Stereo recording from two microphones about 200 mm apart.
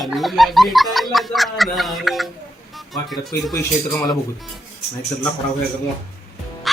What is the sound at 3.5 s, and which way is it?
Speech, 15° left (ahead or behind).